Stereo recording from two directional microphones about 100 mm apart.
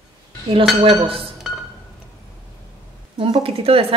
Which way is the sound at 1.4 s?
5° right (ahead or behind).